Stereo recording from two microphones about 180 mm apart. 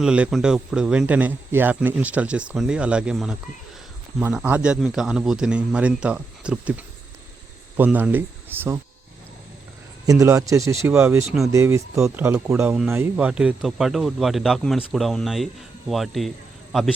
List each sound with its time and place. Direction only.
0.0 s speech: 5° right (ahead or behind)
10.1 s speech: 20° right (ahead or behind); by 16.3 s centre (ahead or behind)